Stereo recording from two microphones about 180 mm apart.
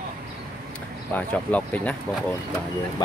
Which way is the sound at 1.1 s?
10° left (ahead or behind).